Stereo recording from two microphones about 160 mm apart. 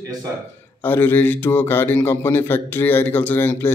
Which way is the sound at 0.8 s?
10° left (ahead or behind).